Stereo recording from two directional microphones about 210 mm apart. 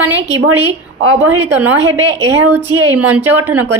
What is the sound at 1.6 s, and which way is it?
Speech, 65° right (ahead or behind).